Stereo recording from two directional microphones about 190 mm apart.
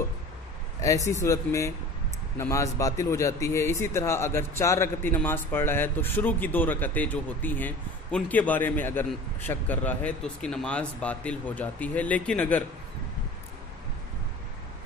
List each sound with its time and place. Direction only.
0.7 s a man's voice: 15° left (ahead or behind)